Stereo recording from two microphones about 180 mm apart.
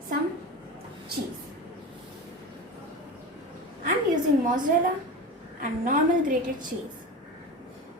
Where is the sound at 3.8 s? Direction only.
45° right (ahead or behind).